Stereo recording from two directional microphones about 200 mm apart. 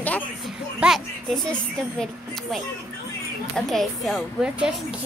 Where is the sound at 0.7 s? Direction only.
Centre (ahead or behind).